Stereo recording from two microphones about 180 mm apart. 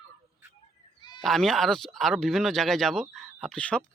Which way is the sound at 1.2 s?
Centre (ahead or behind).